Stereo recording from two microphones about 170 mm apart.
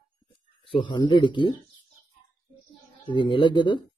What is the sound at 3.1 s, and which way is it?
Speech, 30° left (ahead or behind).